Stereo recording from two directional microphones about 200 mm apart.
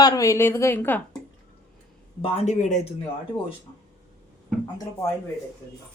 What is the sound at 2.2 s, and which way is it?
Speech, 35° left (ahead or behind).